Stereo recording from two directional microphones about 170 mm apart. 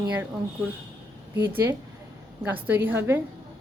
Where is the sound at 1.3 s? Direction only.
15° right (ahead or behind).